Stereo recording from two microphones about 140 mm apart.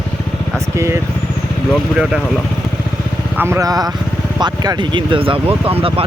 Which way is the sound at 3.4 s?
20° right (ahead or behind).